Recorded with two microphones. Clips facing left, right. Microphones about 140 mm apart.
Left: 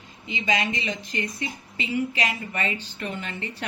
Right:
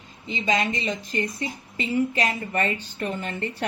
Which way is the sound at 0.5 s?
50° right (ahead or behind).